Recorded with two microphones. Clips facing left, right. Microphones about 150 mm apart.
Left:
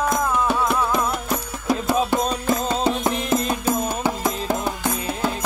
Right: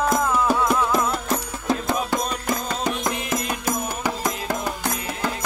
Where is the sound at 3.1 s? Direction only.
30° left (ahead or behind).